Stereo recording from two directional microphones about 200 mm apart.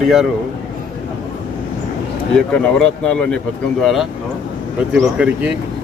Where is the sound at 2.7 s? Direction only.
5° left (ahead or behind).